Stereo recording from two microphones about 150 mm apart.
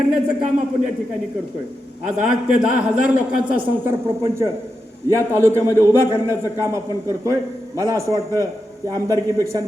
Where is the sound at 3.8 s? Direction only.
15° right (ahead or behind).